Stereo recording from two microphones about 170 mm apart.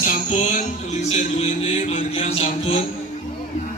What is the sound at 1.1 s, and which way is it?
Music, 40° left (ahead or behind).